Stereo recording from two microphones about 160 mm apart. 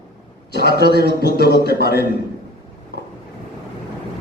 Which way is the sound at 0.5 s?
90° left.